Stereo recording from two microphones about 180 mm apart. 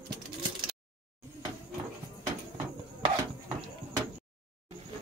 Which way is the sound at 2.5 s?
25° right (ahead or behind).